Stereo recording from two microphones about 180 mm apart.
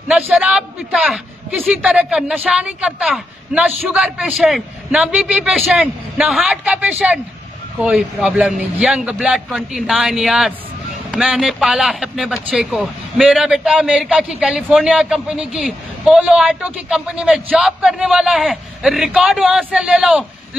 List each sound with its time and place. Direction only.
0.1 s speech: 5° right (ahead or behind)